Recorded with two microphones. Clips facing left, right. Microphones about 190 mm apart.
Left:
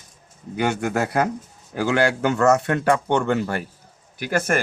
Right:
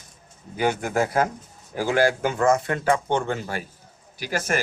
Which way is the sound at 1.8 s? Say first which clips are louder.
Left 1 dB; 70° left (ahead or behind).